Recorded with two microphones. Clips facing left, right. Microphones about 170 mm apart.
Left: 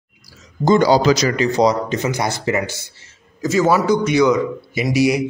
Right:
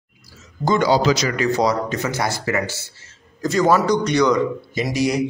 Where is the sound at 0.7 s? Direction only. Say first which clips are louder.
Left 2 dB; 40° left (ahead or behind).